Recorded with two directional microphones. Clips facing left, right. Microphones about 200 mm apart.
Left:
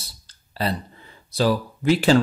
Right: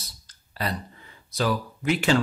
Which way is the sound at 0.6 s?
30° left (ahead or behind).